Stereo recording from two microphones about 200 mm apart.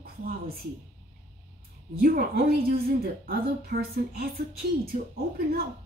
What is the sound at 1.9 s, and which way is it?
Speech, 50° right (ahead or behind).